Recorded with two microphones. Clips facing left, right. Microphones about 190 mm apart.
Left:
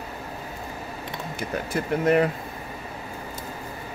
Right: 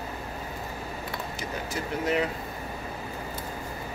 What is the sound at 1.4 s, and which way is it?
Speech, 55° left (ahead or behind).